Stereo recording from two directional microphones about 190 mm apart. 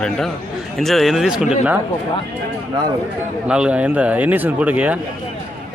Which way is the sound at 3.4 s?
5° right (ahead or behind).